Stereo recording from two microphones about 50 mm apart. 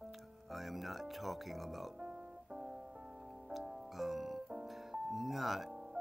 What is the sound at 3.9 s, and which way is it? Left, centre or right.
Music, centre.